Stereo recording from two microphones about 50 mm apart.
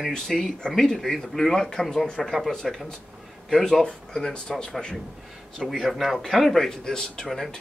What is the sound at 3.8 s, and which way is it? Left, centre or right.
Speech, centre.